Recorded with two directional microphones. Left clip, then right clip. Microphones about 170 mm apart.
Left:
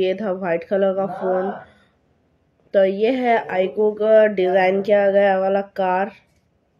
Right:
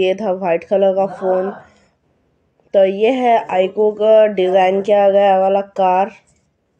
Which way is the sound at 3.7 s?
Centre (ahead or behind).